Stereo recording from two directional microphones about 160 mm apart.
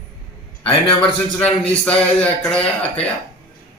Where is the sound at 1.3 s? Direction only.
10° left (ahead or behind).